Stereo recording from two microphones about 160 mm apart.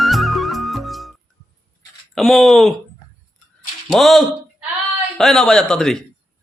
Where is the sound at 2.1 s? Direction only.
Centre (ahead or behind).